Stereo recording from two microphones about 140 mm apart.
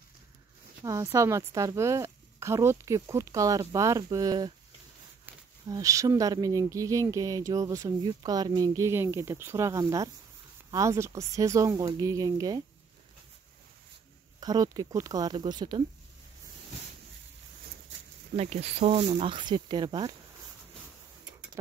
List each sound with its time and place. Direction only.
0.8 s speech: 25° right (ahead or behind)
5.7 s speech: 25° right (ahead or behind)
14.4 s speech: 30° right (ahead or behind)
18.3 s speech: 45° right (ahead or behind)
19.2 s speech: 35° right (ahead or behind)